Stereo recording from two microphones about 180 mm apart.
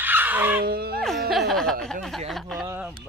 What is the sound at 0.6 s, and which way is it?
Speech, 60° right (ahead or behind).